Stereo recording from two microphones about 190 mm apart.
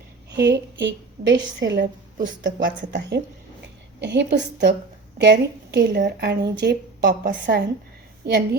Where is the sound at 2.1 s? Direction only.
45° right (ahead or behind).